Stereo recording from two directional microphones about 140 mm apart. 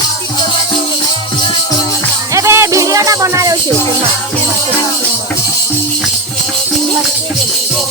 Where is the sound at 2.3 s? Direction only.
20° right (ahead or behind).